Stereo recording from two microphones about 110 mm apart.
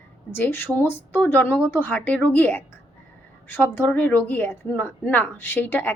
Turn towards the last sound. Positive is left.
turn(degrees=15)  # may be behind; listen again after turning